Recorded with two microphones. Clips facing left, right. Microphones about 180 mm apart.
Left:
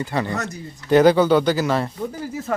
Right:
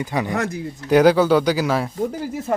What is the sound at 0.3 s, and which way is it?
Speech, 55° right (ahead or behind).